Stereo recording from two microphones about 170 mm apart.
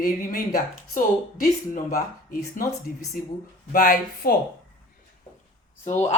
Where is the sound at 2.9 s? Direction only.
55° left (ahead or behind).